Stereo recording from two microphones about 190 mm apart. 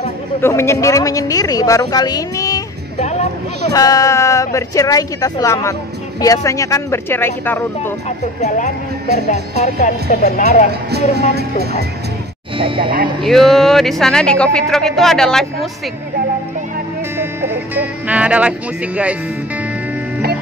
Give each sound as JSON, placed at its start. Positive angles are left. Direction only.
{"t": 0.4, "sound": "a woman's voice", "side_deg": 15}
{"t": 3.0, "sound": "speech", "side_deg": 35}
{"t": 3.7, "sound": "a woman's voice", "side_deg": 20}
{"t": 8.4, "sound": "speech", "side_deg": 40}
{"t": 9.8, "sound": "speech", "side_deg": 40}
{"t": 10.7, "sound": "speech", "side_deg": -60}
{"t": 12.5, "sound": "speech", "side_deg": -30}
{"t": 13.2, "sound": "speech", "side_deg": 0}
{"t": 17.2, "sound": "speech", "side_deg": -10}